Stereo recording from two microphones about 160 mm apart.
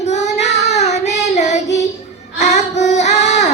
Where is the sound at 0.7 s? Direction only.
45° left (ahead or behind).